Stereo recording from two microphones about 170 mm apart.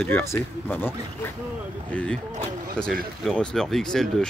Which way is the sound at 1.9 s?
5° left (ahead or behind).